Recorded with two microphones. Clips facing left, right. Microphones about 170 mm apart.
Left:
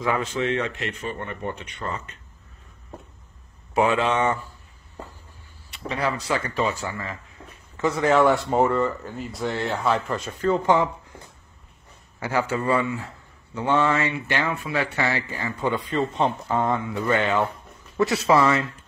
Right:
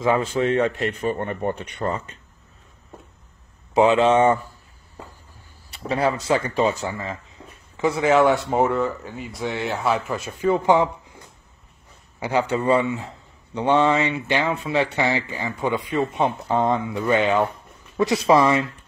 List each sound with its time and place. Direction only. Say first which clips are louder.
0.0 s speech: right 4 dB; 30° right (ahead or behind)
3.7 s speech: right 5 dB; 20° right (ahead or behind)
4.1 s speech: right 6 dB; 30° right (ahead or behind)
5.7 s speech: right 4 dB; 35° right (ahead or behind); by 11.1 s 15° right (ahead or behind)
12.2 s speech: right 3 dB; 20° right (ahead or behind)